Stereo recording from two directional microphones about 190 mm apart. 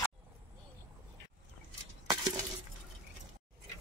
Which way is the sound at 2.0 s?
20° right (ahead or behind).